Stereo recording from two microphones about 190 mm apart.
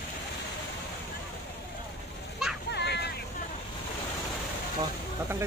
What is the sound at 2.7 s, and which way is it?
Vehicle, 60° left (ahead or behind).